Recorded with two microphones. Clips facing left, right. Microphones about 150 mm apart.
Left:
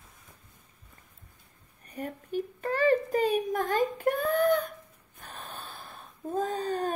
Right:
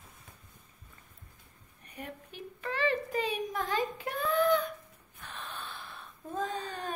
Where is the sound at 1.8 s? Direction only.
40° left (ahead or behind).